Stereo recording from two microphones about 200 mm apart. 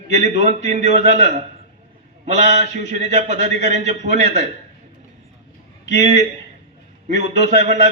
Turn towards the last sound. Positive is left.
turn(degrees=-35)  # may be behind; listen again after turning